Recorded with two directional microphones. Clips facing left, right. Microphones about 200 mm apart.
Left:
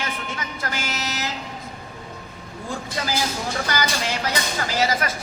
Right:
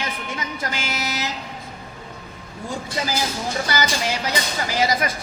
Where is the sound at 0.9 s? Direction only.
10° right (ahead or behind).